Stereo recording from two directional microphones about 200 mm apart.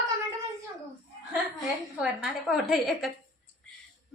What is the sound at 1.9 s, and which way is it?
A woman's voice, 5° right (ahead or behind).